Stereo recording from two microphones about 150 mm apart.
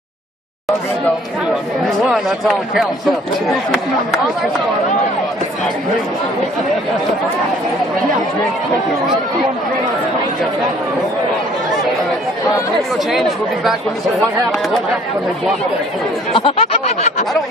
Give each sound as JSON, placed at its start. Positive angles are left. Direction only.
{"t": 2.0, "sound": "speech", "side_deg": 0}
{"t": 13.1, "sound": "speech", "side_deg": 0}
{"t": 16.3, "sound": "speech", "side_deg": 40}